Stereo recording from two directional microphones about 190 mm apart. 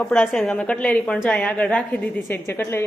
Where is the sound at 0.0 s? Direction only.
5° left (ahead or behind).